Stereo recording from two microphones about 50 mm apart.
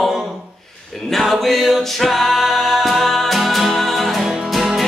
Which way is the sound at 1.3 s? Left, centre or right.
Centre.